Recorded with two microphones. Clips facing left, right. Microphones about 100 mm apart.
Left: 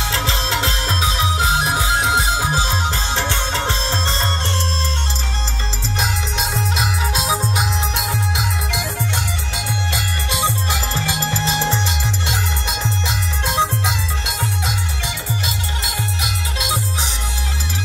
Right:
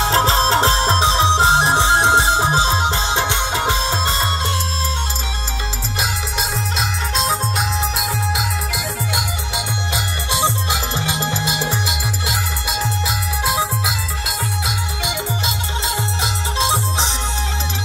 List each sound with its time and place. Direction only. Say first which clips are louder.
0.0 s music: right 7 dB; 35° right (ahead or behind); by 4.3 s 10° right (ahead or behind)
5.9 s music: left 1 dB; centre (ahead or behind)
9.6 s music: even; 20° right (ahead or behind); by 14.8 s 5° right (ahead or behind)
15.0 s music: right 4 dB; 25° right (ahead or behind)